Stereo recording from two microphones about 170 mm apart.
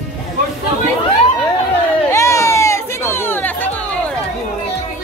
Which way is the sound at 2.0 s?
15° left (ahead or behind).